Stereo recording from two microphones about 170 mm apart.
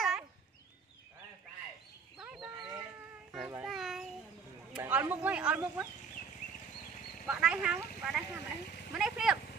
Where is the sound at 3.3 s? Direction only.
15° right (ahead or behind).